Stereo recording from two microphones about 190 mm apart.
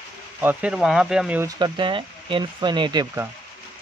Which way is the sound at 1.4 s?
20° right (ahead or behind).